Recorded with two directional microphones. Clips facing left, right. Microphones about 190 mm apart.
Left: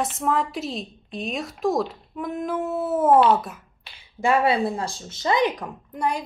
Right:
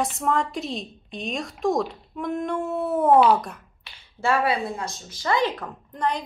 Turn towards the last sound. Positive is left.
turn(degrees=10)  # may be behind; listen again after turning